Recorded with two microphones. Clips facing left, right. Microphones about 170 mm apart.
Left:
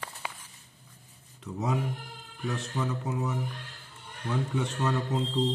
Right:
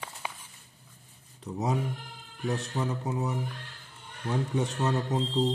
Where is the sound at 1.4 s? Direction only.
35° right (ahead or behind).